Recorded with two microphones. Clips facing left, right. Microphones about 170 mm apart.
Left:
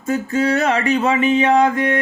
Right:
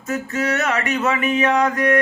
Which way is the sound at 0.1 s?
30° left (ahead or behind).